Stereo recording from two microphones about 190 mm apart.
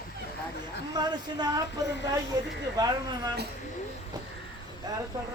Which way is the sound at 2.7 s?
20° right (ahead or behind).